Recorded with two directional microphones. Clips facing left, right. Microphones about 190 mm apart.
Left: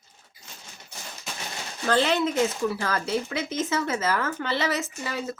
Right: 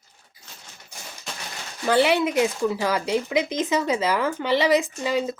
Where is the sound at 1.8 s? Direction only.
10° right (ahead or behind).